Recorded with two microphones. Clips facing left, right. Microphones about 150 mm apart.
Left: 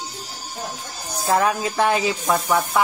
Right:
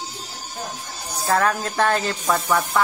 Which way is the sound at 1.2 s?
15° left (ahead or behind).